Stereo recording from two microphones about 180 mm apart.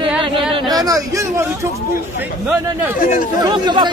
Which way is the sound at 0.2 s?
25° right (ahead or behind).